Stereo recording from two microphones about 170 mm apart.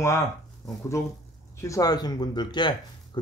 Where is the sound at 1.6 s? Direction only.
20° left (ahead or behind).